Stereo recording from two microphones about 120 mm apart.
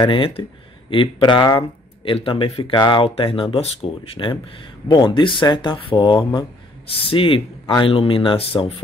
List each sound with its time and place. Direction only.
0.0 s speech: 45° left (ahead or behind)